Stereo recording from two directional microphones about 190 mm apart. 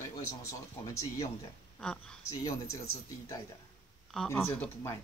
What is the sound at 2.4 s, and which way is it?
Speech, 15° left (ahead or behind).